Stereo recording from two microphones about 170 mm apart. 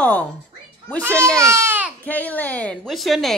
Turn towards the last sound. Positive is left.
turn(degrees=0)  # may be behind; listen again after turning